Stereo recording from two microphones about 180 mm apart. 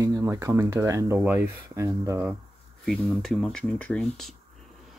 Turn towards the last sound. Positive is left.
turn(degrees=5)  # may be behind; listen again after turning